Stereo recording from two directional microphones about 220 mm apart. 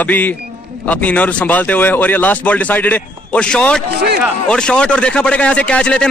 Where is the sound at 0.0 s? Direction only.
10° left (ahead or behind).